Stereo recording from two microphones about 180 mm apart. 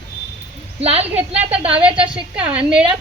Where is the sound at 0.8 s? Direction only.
35° right (ahead or behind).